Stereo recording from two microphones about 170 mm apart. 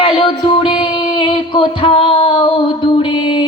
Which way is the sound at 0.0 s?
30° left (ahead or behind).